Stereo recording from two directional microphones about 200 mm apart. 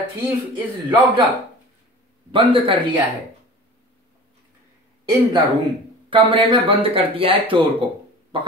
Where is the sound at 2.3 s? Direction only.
25° right (ahead or behind).